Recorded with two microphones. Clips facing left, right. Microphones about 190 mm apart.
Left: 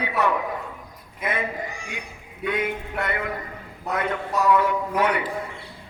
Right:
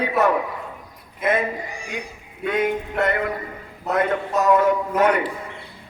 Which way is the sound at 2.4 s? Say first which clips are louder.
Right 4 dB; 40° right (ahead or behind).